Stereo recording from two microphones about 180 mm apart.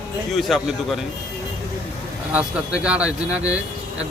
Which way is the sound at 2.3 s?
5° right (ahead or behind).